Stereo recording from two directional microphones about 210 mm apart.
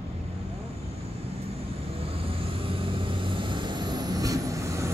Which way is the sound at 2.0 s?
25° right (ahead or behind).